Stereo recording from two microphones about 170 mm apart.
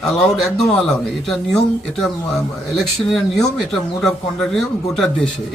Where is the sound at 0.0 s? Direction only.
5° left (ahead or behind).